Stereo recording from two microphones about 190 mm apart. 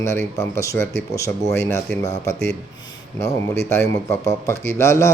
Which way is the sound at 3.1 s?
15° left (ahead or behind).